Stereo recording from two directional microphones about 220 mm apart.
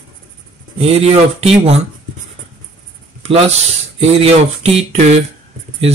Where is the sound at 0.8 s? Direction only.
30° right (ahead or behind).